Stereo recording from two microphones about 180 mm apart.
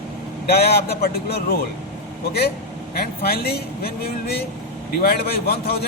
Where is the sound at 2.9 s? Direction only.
60° left (ahead or behind).